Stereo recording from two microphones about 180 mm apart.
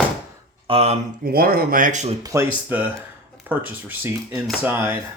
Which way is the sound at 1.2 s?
55° right (ahead or behind).